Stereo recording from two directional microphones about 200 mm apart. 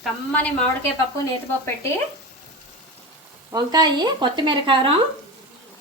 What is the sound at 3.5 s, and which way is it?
Speech, 20° right (ahead or behind).